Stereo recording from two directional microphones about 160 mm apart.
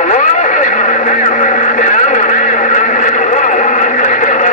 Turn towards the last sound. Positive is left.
turn(degrees=50)  # may be behind; listen again after turning